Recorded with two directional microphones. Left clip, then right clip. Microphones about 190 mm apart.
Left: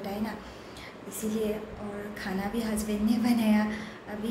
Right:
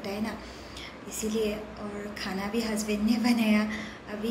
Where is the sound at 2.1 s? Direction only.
15° left (ahead or behind).